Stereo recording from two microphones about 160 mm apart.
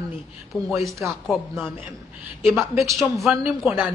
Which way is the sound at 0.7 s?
20° right (ahead or behind).